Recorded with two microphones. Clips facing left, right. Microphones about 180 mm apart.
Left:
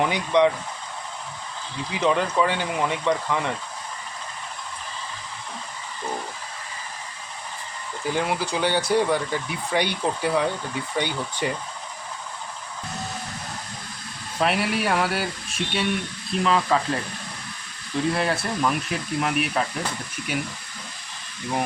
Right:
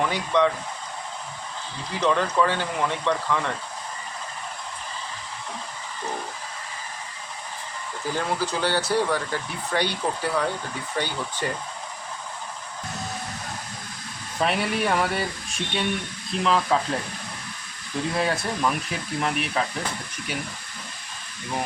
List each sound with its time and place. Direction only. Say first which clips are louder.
0.0 s speech: left 2 dB; 15° left (ahead or behind)
1.9 s speech: left 1 dB; 10° left (ahead or behind)
8.1 s speech: left 1 dB; 15° left (ahead or behind)
14.4 s speech: left 1 dB; 5° left (ahead or behind)
18.1 s speech: right 2 dB; centre (ahead or behind)